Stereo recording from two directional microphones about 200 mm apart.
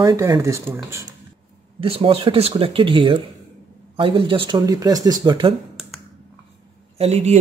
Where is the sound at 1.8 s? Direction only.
30° right (ahead or behind).